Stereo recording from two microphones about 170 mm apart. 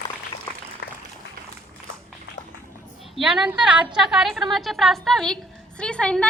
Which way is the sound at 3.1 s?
Centre (ahead or behind).